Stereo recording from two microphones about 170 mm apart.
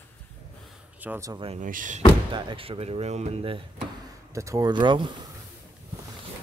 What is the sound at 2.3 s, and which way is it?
Speech, 30° right (ahead or behind).